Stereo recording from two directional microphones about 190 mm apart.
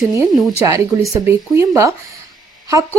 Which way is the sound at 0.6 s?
15° right (ahead or behind).